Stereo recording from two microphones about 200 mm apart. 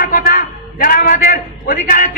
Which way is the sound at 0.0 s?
45° left (ahead or behind).